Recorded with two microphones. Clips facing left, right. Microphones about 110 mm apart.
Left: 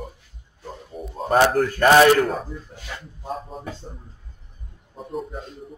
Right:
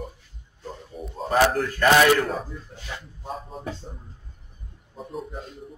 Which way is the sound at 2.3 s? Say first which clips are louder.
Left 2 dB; centre (ahead or behind).